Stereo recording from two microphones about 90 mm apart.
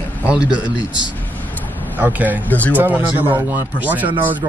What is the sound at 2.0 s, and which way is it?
Speech, 20° right (ahead or behind).